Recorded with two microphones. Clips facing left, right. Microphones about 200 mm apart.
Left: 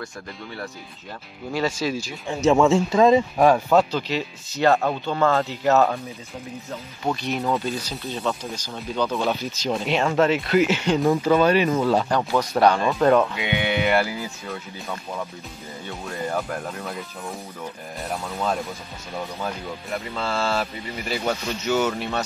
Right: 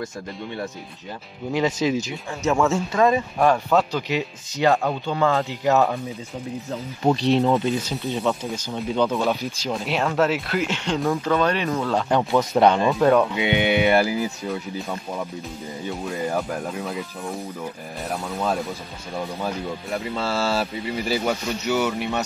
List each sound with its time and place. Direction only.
1.5 s speech: 20° right (ahead or behind)
2.7 s speech: 20° left (ahead or behind); by 3.8 s 5° left (ahead or behind)
3.9 s speech: 15° right (ahead or behind)
7.1 s speech: 30° right (ahead or behind)
9.1 s speech: centre (ahead or behind)
12.4 s speech: 20° right (ahead or behind)
13.0 s speech: centre (ahead or behind)
13.3 s speech: 25° right (ahead or behind)
15.9 s speech: 10° right (ahead or behind)
20.2 s speech: 35° right (ahead or behind)
21.1 s speech: 10° right (ahead or behind)